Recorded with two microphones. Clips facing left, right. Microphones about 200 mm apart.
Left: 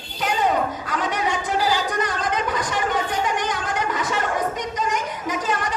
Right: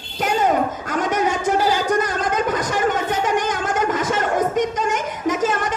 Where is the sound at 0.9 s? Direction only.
45° right (ahead or behind).